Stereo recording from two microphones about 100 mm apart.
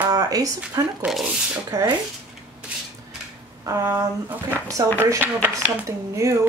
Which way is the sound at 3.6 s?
30° right (ahead or behind).